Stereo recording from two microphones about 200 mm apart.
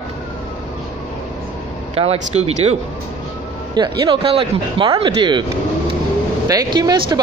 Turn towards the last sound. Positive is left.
turn(degrees=-20)  # may be behind; listen again after turning